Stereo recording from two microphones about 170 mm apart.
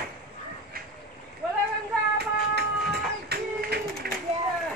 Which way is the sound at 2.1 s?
70° right (ahead or behind).